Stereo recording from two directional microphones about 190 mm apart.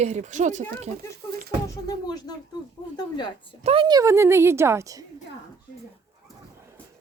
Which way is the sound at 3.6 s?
25° right (ahead or behind).